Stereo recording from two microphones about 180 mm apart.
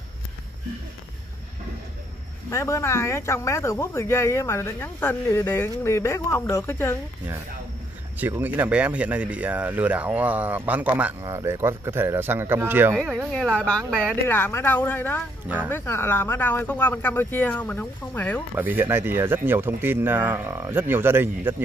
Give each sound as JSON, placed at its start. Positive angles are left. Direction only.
{"t": 2.5, "sound": "speech", "side_deg": 15}
{"t": 8.2, "sound": "speech", "side_deg": -10}
{"t": 12.9, "sound": "speech", "side_deg": 5}
{"t": 15.4, "sound": "speech", "side_deg": -10}
{"t": 15.7, "sound": "speech", "side_deg": 10}
{"t": 18.5, "sound": "speech", "side_deg": -10}